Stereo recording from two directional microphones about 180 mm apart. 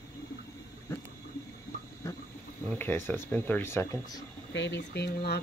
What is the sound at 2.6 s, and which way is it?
Speech, 10° left (ahead or behind).